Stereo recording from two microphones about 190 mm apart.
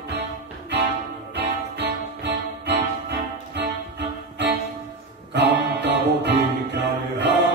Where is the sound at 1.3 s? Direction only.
60° right (ahead or behind).